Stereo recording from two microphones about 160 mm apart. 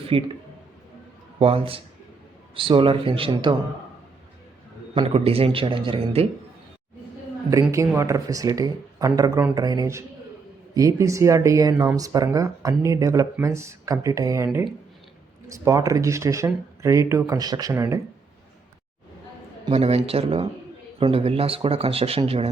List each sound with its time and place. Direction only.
0.1 s a man's voice: 35° right (ahead or behind)
1.4 s a man's voice: 35° right (ahead or behind)
4.9 s a man's voice: 35° right (ahead or behind)
7.5 s speech: 20° right (ahead or behind)
19.7 s a man's voice: 40° right (ahead or behind)